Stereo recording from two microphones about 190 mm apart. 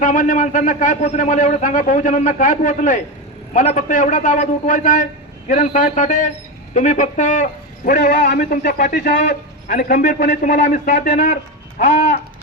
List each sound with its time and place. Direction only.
0.0 s a man's voice: 45° left (ahead or behind)